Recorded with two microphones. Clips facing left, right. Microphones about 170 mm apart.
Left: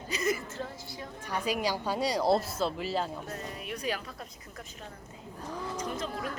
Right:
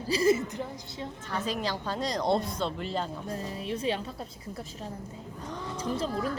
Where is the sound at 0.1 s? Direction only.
30° right (ahead or behind).